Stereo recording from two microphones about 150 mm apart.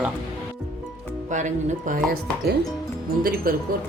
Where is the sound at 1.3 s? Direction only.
55° right (ahead or behind).